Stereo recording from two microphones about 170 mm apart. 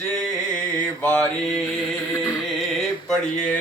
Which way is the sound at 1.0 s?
5° left (ahead or behind).